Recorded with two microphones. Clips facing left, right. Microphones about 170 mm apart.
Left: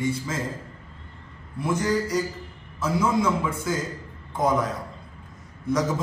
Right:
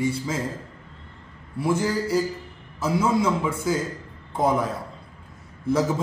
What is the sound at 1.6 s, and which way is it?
A man's voice, 30° right (ahead or behind).